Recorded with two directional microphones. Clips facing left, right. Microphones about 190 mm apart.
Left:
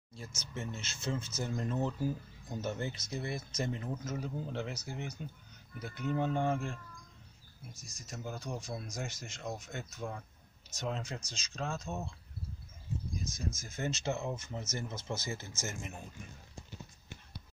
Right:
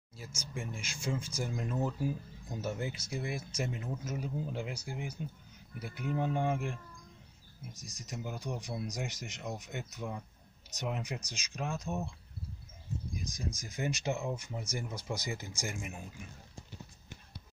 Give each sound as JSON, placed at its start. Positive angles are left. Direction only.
{"t": 0.1, "sound": "speech", "side_deg": -10}
{"t": 8.0, "sound": "speech", "side_deg": -15}
{"t": 13.2, "sound": "speech", "side_deg": -15}